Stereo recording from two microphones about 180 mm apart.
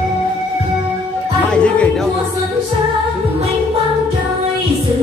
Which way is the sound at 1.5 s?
5° left (ahead or behind).